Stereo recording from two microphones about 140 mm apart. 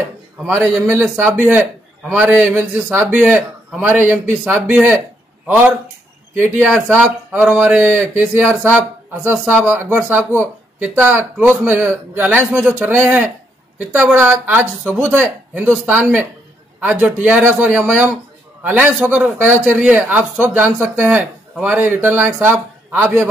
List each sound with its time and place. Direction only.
0.5 s a man's voice: 10° right (ahead or behind)